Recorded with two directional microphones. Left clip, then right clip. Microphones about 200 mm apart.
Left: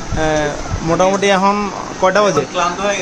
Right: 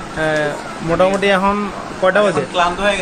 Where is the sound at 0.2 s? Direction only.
15° left (ahead or behind).